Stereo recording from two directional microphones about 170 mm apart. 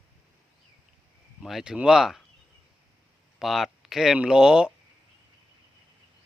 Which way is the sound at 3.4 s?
Centre (ahead or behind).